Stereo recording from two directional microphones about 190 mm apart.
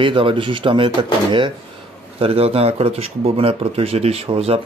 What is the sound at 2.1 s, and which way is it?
Speech, 30° right (ahead or behind).